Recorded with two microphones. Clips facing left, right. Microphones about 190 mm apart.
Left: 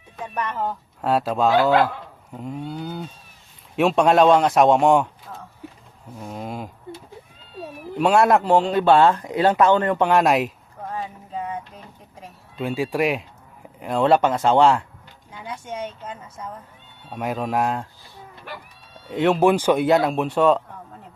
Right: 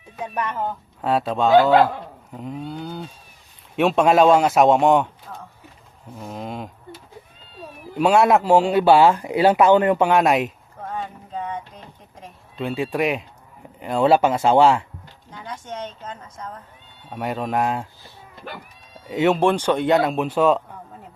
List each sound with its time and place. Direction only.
0.3 s speech: 5° right (ahead or behind)
6.1 s speech: centre (ahead or behind)
7.9 s speech: centre (ahead or behind)
10.1 s a sound: centre (ahead or behind)
12.2 s speech: centre (ahead or behind)
15.3 s a woman's voice: 10° left (ahead or behind)
19.0 s speech: centre (ahead or behind)